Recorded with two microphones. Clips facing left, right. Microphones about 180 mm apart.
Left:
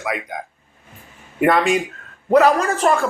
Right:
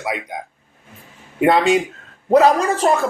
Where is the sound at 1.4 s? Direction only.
25° right (ahead or behind).